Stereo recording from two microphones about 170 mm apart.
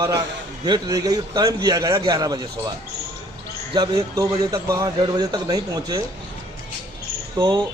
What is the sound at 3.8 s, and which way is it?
A man's voice, 20° right (ahead or behind).